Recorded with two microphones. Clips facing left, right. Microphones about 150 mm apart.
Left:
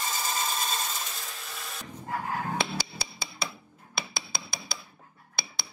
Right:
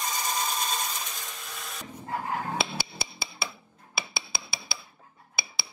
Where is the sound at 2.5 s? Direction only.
10° right (ahead or behind).